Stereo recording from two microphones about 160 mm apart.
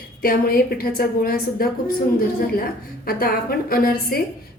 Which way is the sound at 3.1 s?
65° left (ahead or behind).